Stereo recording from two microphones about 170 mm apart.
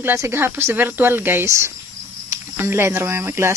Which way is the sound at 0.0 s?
15° right (ahead or behind).